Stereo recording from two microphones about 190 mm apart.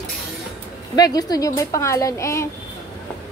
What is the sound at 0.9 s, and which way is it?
A woman's voice, 20° left (ahead or behind).